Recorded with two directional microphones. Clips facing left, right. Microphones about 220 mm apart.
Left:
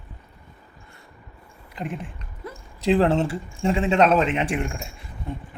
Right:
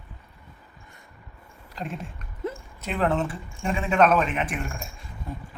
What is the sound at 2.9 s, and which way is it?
Speech, 30° left (ahead or behind).